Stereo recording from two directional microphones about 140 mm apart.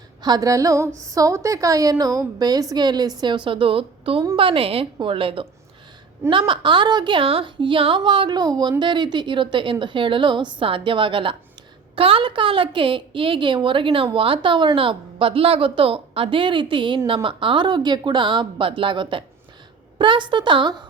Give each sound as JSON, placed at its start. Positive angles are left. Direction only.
{"t": 0.2, "sound": "a woman's voice", "side_deg": -30}